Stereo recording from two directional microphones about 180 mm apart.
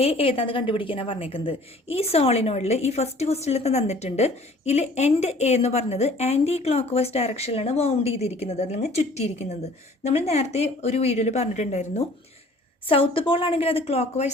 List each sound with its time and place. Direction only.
0.0 s a woman's voice: 30° left (ahead or behind)
12.9 s a woman's voice: 30° left (ahead or behind)